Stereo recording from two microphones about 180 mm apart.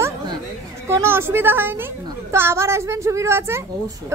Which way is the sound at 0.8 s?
15° right (ahead or behind).